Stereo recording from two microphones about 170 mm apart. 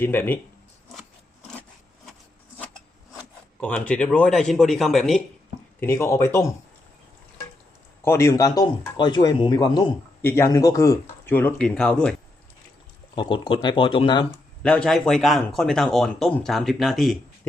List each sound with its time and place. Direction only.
0.0 s speech: 10° left (ahead or behind)
3.6 s speech: 10° left (ahead or behind)
5.8 s speech: 15° left (ahead or behind)
8.0 s speech: 15° left (ahead or behind)
13.1 s speech: 30° left (ahead or behind)
14.3 s speech: 5° left (ahead or behind)